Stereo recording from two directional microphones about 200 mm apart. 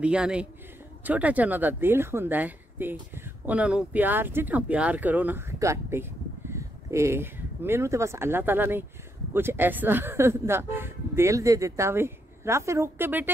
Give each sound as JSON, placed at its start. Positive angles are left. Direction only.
{"t": 0.0, "sound": "speech", "side_deg": -5}